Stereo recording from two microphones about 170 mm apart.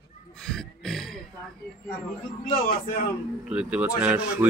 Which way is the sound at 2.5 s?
50° left (ahead or behind).